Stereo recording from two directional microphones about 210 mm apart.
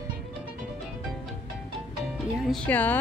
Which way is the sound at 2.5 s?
10° left (ahead or behind).